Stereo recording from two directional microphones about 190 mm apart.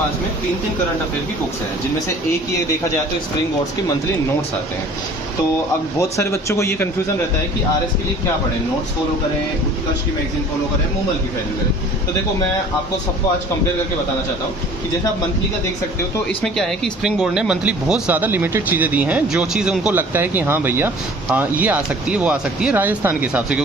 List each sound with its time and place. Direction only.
5.9 s speech: 15° left (ahead or behind)
16.3 s speech: centre (ahead or behind)